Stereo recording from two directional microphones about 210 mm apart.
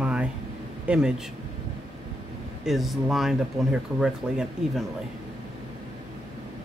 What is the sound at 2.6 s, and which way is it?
Speech, centre (ahead or behind).